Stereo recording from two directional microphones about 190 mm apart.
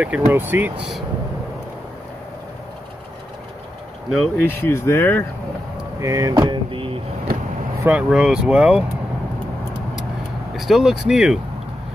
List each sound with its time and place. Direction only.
0.3 s speech: 10° right (ahead or behind)
4.1 s speech: centre (ahead or behind)
4.5 s speech: 10° left (ahead or behind)
5.9 s vehicle: 15° right (ahead or behind)
7.8 s speech: 5° right (ahead or behind)
10.5 s speech: centre (ahead or behind)